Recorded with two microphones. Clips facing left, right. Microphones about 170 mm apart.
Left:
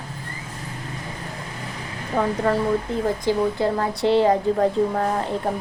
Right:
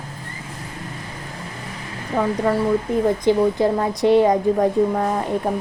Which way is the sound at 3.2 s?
20° right (ahead or behind).